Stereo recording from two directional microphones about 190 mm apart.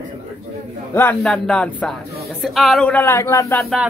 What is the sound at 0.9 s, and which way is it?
Speech, 10° left (ahead or behind).